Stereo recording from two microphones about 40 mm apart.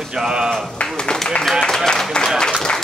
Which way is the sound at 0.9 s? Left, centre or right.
Left.